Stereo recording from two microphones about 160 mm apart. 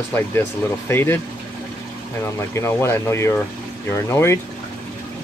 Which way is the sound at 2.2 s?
15° left (ahead or behind).